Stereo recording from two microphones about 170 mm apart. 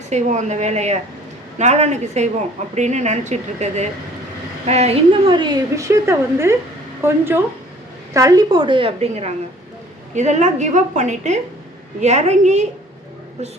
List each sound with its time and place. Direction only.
0.1 s a woman's voice: 45° right (ahead or behind)